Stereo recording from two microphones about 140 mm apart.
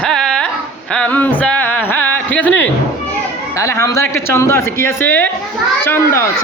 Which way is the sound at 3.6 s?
20° left (ahead or behind).